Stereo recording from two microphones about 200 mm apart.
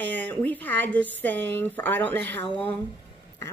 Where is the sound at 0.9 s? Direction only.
65° right (ahead or behind).